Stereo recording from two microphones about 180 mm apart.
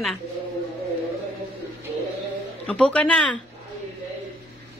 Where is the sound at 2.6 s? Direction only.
5° left (ahead or behind).